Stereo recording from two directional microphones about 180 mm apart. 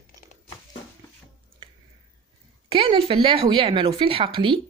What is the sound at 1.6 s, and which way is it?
Finger snapping, 25° right (ahead or behind).